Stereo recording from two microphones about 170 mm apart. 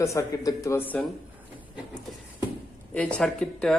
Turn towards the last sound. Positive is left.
turn(degrees=0)  # may be behind; listen again after turning